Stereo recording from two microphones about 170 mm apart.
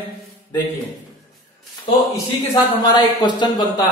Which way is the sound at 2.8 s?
25° left (ahead or behind).